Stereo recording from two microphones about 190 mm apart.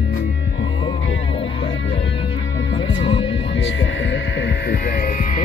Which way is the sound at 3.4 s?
70° left (ahead or behind).